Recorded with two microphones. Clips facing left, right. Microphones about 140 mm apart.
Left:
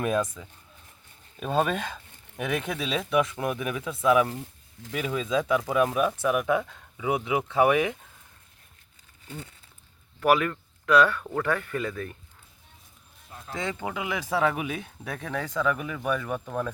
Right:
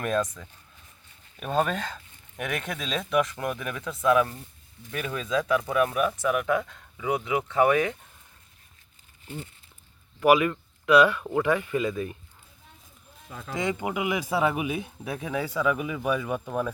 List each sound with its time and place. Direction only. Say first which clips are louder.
0.4 s speech: left 1 dB; 10° left (ahead or behind)
10.2 s speech: right 2 dB; 10° right (ahead or behind)
13.6 s speech: right 3 dB; 15° right (ahead or behind)